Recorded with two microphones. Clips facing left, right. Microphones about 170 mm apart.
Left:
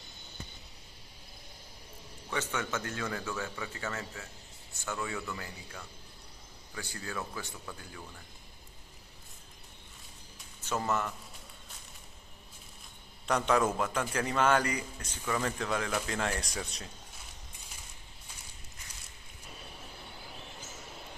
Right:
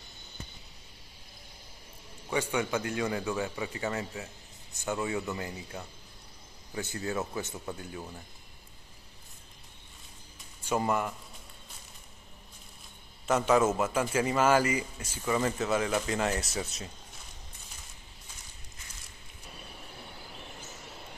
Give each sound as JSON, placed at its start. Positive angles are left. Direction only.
{"t": 2.2, "sound": "a man's voice", "side_deg": -15}
{"t": 10.6, "sound": "a man's voice", "side_deg": -10}
{"t": 13.3, "sound": "a man's voice", "side_deg": -5}